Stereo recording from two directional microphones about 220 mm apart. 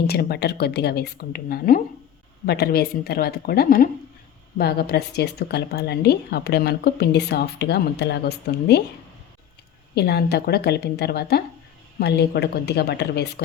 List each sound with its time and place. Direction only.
0.1 s speech: 45° left (ahead or behind)
9.9 s speech: 45° left (ahead or behind)